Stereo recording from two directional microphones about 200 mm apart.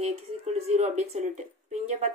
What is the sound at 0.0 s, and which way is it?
Speech, 30° right (ahead or behind).